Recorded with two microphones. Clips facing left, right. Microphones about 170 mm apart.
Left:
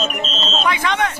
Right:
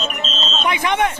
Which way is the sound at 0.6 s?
20° right (ahead or behind).